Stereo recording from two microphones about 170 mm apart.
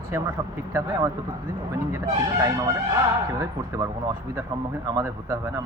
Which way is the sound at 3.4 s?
20° right (ahead or behind).